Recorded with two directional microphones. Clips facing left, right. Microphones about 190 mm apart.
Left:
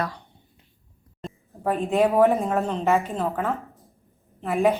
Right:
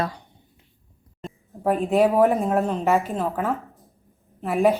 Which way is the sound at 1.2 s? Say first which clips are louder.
Right 1 dB; centre (ahead or behind).